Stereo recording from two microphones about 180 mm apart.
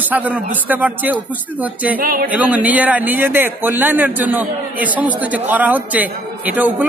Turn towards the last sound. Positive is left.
turn(degrees=-10)  # may be behind; listen again after turning